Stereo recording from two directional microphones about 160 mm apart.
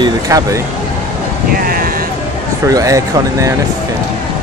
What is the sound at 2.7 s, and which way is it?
Speech, 20° right (ahead or behind).